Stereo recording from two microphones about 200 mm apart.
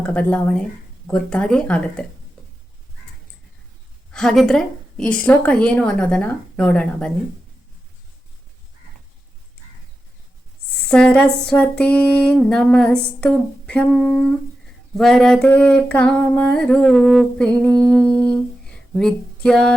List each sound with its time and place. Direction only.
0.0 s a woman's voice: 5° left (ahead or behind)
4.1 s a woman's voice: 5° left (ahead or behind)
10.8 s a woman's voice: 5° left (ahead or behind)
17.7 s humming: 20° right (ahead or behind)
17.9 s a sound: 5° left (ahead or behind)